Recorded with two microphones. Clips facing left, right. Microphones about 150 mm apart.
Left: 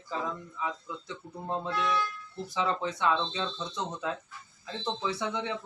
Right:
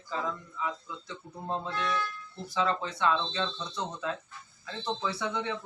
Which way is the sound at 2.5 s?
20° left (ahead or behind).